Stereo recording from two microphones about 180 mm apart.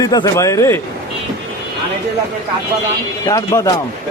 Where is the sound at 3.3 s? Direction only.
20° left (ahead or behind).